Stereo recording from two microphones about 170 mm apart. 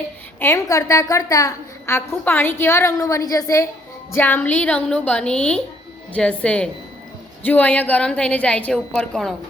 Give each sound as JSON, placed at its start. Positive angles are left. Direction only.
{"t": 0.3, "sound": "a woman's voice", "side_deg": 15}